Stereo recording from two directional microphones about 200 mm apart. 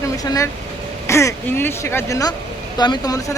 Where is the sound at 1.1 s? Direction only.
15° left (ahead or behind).